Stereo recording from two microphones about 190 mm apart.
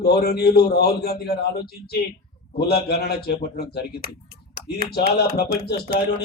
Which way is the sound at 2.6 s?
55° left (ahead or behind).